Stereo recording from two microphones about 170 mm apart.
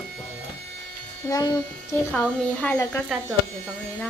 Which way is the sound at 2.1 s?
10° left (ahead or behind).